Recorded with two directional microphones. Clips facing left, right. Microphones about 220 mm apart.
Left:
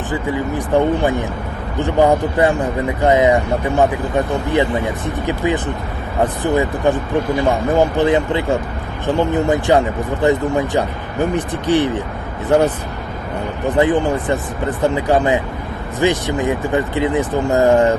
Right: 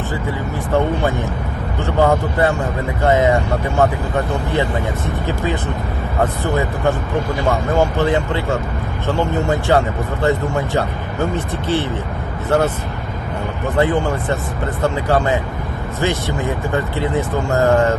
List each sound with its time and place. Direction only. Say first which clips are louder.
0.1 s speech: left 3 dB; 15° left (ahead or behind)